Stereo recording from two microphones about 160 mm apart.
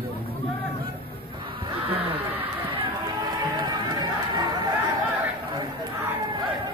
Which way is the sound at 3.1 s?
25° right (ahead or behind).